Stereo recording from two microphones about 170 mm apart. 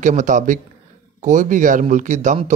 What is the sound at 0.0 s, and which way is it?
A man's voice, 45° right (ahead or behind).